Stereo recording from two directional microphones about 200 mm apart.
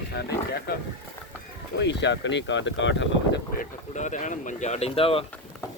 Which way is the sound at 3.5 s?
35° left (ahead or behind).